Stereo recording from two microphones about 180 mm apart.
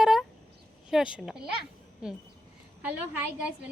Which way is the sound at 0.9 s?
5° right (ahead or behind).